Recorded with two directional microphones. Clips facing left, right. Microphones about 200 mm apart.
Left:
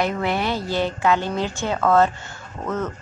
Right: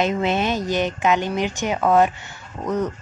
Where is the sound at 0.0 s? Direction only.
20° right (ahead or behind).